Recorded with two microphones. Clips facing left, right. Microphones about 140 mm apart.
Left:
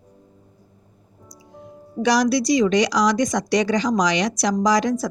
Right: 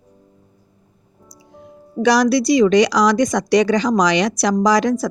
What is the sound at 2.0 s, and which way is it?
Speech, 70° right (ahead or behind).